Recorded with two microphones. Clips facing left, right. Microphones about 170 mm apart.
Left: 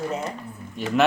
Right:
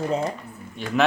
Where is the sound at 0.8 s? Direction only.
Centre (ahead or behind).